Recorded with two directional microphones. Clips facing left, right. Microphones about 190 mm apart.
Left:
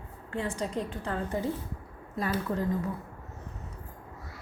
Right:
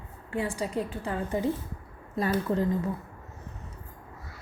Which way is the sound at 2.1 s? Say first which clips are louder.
Right 4 dB; 30° right (ahead or behind).